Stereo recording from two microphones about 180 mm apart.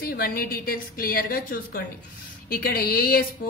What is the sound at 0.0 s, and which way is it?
Speech, 55° left (ahead or behind).